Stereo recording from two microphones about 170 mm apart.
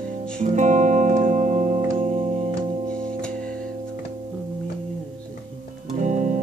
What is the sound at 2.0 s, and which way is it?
Organ, 40° right (ahead or behind).